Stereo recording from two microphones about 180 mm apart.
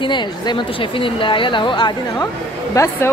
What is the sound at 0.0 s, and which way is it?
Speech, 25° left (ahead or behind).